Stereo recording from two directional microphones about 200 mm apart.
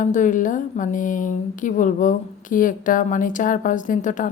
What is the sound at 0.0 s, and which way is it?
Speech, 40° left (ahead or behind).